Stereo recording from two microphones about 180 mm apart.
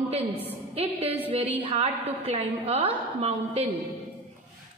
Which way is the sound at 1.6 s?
30° right (ahead or behind).